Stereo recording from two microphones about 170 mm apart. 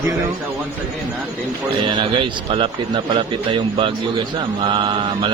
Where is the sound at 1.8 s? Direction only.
30° right (ahead or behind).